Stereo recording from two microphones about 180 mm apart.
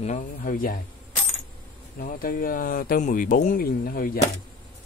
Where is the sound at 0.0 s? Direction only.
45° left (ahead or behind).